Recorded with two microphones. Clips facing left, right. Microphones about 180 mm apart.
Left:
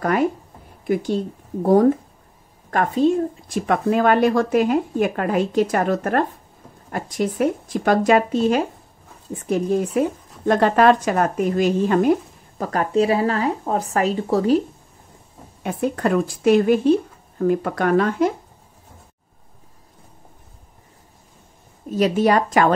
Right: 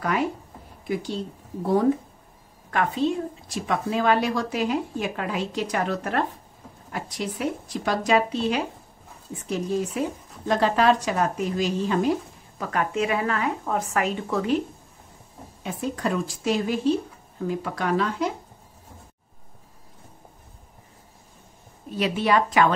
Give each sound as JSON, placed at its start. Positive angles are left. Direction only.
{"t": 0.0, "sound": "a woman's voice", "side_deg": 45}
{"t": 12.6, "sound": "a woman's voice", "side_deg": 35}
{"t": 15.6, "sound": "speech", "side_deg": 55}
{"t": 21.9, "sound": "a woman's voice", "side_deg": 45}